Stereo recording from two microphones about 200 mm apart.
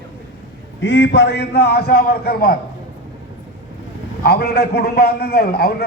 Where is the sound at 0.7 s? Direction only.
65° left (ahead or behind); by 2.5 s 50° left (ahead or behind).